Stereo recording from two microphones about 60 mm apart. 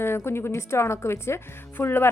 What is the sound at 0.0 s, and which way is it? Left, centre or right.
A woman's voice, left.